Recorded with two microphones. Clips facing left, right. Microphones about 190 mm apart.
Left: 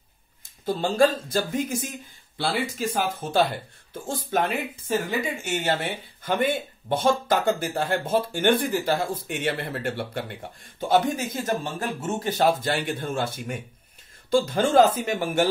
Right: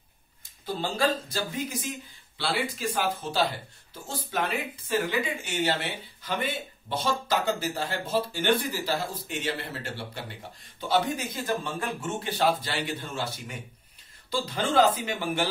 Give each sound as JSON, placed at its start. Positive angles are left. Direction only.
{"t": 0.7, "sound": "speech", "side_deg": 50}